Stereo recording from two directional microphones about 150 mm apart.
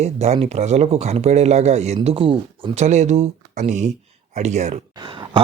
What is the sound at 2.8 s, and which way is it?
Speech, 50° right (ahead or behind).